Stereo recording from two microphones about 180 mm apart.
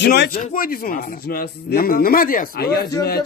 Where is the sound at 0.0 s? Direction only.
65° left (ahead or behind).